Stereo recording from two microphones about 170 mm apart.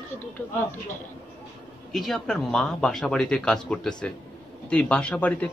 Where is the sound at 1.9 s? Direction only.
Centre (ahead or behind).